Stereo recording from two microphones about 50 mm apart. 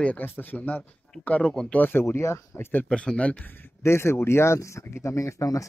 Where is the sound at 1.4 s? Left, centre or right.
Centre.